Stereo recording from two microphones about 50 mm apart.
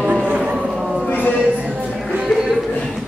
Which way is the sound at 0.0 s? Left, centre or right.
Right.